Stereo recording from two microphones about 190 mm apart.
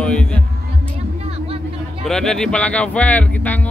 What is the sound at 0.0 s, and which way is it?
Music, 5° left (ahead or behind).